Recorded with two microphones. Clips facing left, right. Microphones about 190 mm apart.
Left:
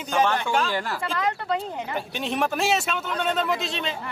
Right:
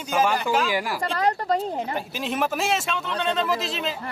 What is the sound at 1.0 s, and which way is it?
Speech, 35° right (ahead or behind).